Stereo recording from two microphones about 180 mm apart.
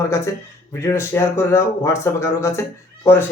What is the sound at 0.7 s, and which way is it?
Speech, 15° left (ahead or behind).